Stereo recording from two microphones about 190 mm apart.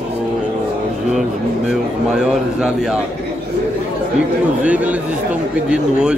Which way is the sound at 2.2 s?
5° right (ahead or behind).